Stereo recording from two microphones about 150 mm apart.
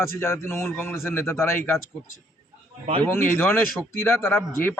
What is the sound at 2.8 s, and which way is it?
Speech, 35° right (ahead or behind).